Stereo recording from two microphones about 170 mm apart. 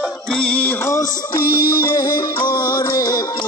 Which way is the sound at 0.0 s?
10° left (ahead or behind).